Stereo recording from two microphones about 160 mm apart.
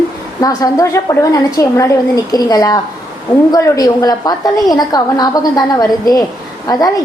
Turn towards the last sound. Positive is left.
turn(degrees=25)  # may be behind; listen again after turning